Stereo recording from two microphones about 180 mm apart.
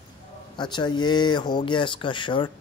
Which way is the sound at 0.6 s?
25° left (ahead or behind).